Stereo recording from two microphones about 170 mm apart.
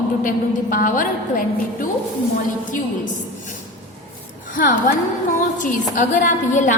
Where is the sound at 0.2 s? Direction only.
55° left (ahead or behind).